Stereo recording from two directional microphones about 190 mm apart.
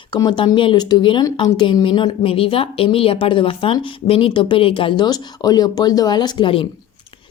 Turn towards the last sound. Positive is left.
turn(degrees=25)  # may be behind; listen again after turning